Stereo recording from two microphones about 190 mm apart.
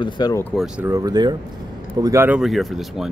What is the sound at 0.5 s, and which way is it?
Speech, 5° right (ahead or behind).